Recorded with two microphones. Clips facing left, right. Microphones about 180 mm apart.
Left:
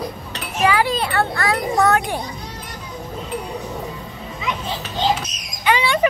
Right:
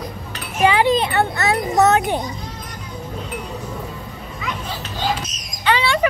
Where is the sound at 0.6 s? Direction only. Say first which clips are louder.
Right 3 dB; 20° right (ahead or behind).